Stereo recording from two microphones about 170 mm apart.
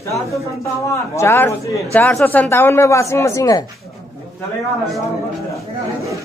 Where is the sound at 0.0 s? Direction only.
20° left (ahead or behind).